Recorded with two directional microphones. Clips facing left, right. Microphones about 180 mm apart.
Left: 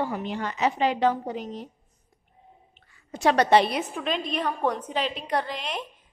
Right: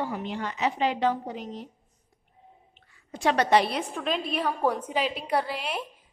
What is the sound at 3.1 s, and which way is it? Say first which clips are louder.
Speech: left 3 dB; 40° left (ahead or behind).